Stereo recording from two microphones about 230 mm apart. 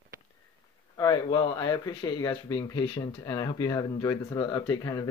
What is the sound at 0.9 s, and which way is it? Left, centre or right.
Speech, centre.